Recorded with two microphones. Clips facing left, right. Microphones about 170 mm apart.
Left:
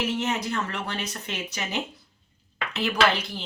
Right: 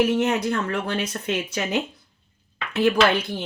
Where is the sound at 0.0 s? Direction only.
60° right (ahead or behind).